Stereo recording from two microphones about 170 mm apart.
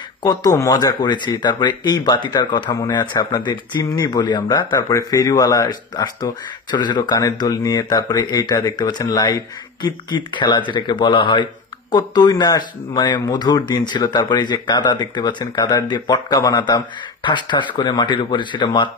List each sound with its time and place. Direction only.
0.2 s speech: 20° left (ahead or behind)